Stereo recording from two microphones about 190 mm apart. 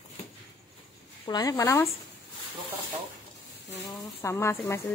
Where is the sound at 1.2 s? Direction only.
20° left (ahead or behind).